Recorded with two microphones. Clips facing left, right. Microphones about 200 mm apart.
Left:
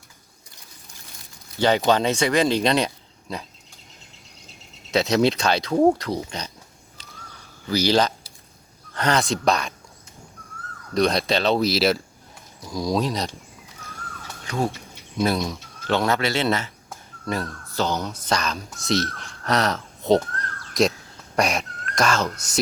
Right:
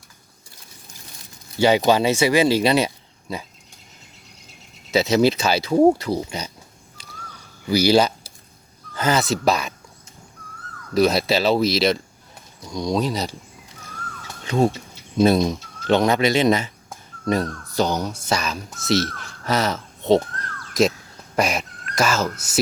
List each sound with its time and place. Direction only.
1.5 s speech: 10° right (ahead or behind)
4.9 s speech: 5° right (ahead or behind)
7.7 s speech: 10° right (ahead or behind)
10.9 s speech: 5° right (ahead or behind)
14.4 s speech: 25° right (ahead or behind); by 22.5 s 5° right (ahead or behind)